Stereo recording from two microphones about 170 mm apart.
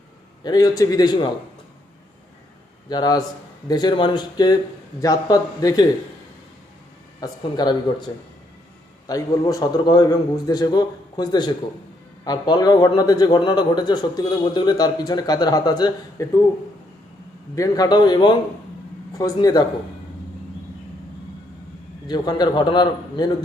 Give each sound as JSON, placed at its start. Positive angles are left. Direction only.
{"t": 0.4, "sound": "a man's voice", "side_deg": 20}
{"t": 2.9, "sound": "a man's voice", "side_deg": 25}
{"t": 7.2, "sound": "a man's voice", "side_deg": 25}
{"t": 17.5, "sound": "a man's voice", "side_deg": 20}
{"t": 22.0, "sound": "a man's voice", "side_deg": 25}